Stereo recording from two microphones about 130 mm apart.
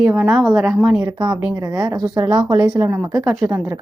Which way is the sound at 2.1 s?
30° right (ahead or behind).